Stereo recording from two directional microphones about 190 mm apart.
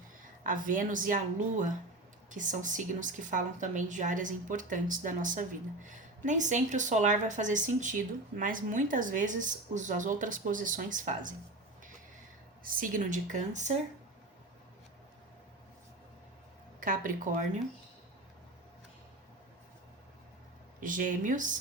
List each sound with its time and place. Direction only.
0.4 s a woman's voice: 45° right (ahead or behind)
12.6 s a woman's voice: 45° right (ahead or behind)
16.8 s speech: 45° right (ahead or behind)
20.8 s speech: 45° right (ahead or behind)